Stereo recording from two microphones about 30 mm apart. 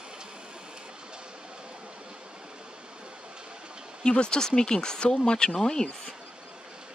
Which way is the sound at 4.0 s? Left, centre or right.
Left.